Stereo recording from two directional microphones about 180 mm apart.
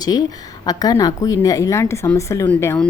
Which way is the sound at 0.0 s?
20° left (ahead or behind).